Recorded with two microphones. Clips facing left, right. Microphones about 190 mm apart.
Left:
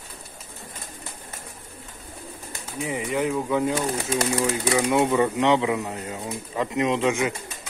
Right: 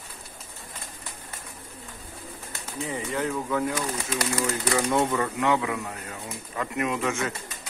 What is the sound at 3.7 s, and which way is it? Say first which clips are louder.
Speech: left 5 dB; 30° left (ahead or behind).